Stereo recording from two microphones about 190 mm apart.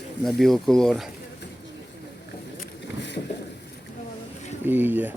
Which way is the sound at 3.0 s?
65° left (ahead or behind).